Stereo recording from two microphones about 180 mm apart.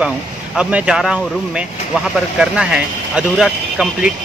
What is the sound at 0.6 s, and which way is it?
Speech, 5° right (ahead or behind).